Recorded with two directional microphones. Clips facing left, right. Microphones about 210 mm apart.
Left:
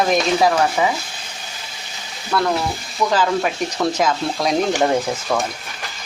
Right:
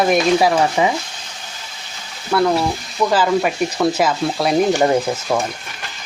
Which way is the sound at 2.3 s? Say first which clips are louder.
Right 4 dB; 10° right (ahead or behind).